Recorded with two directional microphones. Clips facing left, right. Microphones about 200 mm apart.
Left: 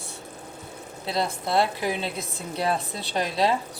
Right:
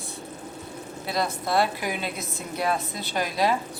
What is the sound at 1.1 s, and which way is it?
A woman's voice, 25° left (ahead or behind).